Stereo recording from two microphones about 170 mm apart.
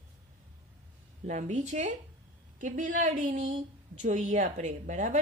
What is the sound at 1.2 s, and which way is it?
Speech, 45° right (ahead or behind).